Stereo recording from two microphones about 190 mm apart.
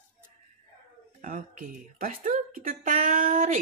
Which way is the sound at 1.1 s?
45° right (ahead or behind).